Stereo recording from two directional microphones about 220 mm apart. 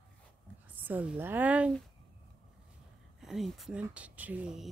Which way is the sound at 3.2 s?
Centre (ahead or behind).